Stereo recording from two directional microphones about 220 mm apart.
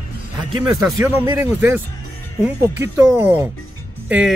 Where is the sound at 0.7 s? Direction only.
15° right (ahead or behind).